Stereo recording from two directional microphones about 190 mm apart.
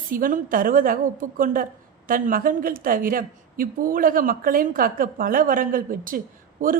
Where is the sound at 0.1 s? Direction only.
45° right (ahead or behind).